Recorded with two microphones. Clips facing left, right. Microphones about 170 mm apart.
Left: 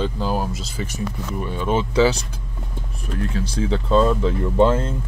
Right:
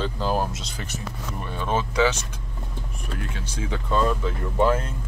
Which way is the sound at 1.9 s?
35° left (ahead or behind).